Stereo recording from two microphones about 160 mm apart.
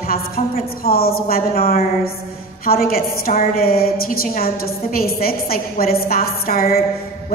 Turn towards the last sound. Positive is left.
turn(degrees=70)  # may be behind; listen again after turning